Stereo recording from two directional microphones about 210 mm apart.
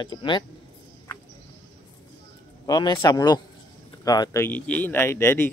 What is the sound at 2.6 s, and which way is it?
Speech, 20° left (ahead or behind).